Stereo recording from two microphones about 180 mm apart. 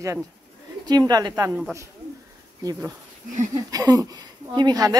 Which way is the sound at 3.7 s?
20° right (ahead or behind).